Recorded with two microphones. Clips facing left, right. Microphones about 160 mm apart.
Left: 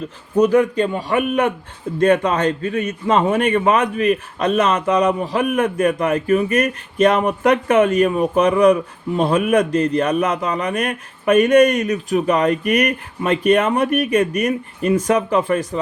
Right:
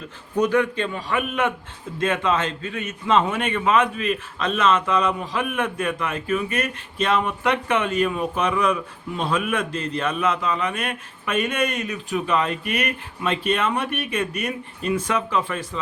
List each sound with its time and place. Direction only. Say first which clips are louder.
0.3 s a man's voice: left 6 dB; 35° left (ahead or behind)